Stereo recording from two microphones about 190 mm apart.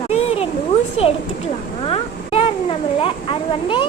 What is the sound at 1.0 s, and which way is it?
Speech, 30° left (ahead or behind).